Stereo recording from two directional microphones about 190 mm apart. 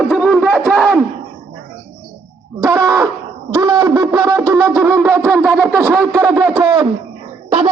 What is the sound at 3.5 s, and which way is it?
Wind instrument, 20° right (ahead or behind).